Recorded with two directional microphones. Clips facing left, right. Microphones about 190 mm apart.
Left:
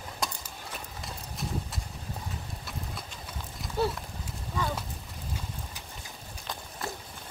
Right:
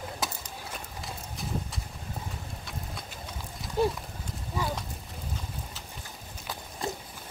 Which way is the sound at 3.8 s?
15° right (ahead or behind).